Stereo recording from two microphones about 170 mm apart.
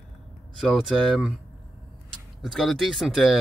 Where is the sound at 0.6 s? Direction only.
Centre (ahead or behind).